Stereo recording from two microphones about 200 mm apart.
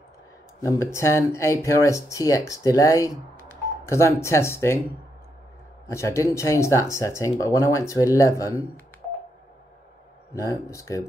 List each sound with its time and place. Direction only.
0.6 s speech: 15° left (ahead or behind)
5.9 s speech: 15° left (ahead or behind)
10.3 s speech: 15° left (ahead or behind)